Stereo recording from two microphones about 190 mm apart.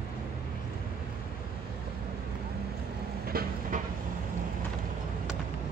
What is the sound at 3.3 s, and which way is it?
Train, 50° right (ahead or behind).